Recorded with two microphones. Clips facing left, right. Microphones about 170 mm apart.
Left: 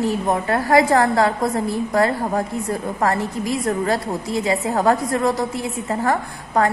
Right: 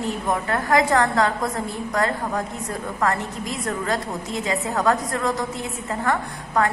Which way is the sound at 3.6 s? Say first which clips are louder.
Left 2 dB; 30° left (ahead or behind).